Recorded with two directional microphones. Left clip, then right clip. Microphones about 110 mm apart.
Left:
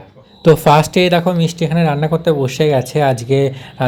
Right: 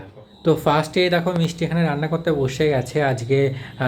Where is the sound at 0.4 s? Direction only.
70° left (ahead or behind).